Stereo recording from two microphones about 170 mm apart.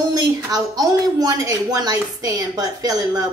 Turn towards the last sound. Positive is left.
turn(degrees=-20)  # may be behind; listen again after turning